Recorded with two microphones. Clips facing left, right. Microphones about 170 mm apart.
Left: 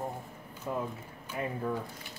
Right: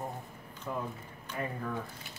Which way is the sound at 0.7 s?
20° left (ahead or behind).